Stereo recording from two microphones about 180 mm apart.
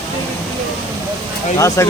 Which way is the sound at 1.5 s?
15° left (ahead or behind).